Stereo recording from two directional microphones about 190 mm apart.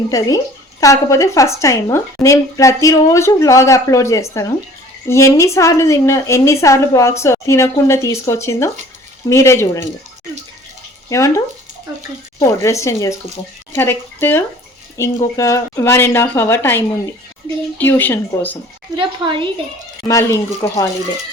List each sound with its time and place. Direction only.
0.1 s speech: 20° left (ahead or behind)
11.1 s speech: 15° left (ahead or behind)
18.9 s a woman's voice: 25° right (ahead or behind)
20.1 s speech: 15° left (ahead or behind)